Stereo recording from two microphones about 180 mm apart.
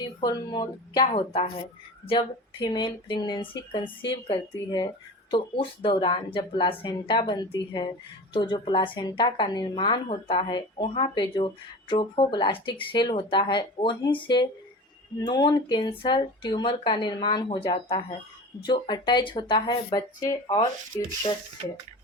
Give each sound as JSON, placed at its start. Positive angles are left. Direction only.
{"t": 0.2, "sound": "speech", "side_deg": 20}